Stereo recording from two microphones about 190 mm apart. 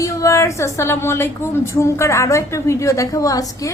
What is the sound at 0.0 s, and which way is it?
Speech, 15° left (ahead or behind).